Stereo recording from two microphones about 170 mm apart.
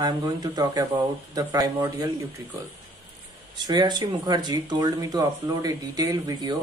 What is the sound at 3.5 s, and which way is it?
Speech, 25° right (ahead or behind).